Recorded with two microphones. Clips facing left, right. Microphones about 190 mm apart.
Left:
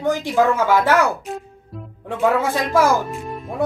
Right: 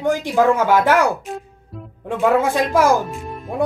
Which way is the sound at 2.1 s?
15° right (ahead or behind).